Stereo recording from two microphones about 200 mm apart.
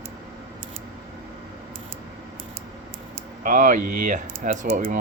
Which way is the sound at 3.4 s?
40° right (ahead or behind).